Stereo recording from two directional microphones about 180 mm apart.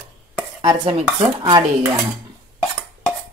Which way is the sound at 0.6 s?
25° right (ahead or behind).